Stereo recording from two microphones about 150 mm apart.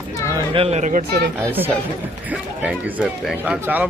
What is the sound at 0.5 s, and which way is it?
Speech, 40° right (ahead or behind).